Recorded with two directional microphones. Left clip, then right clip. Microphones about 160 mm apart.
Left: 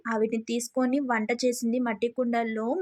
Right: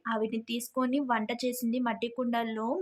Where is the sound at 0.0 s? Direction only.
20° left (ahead or behind).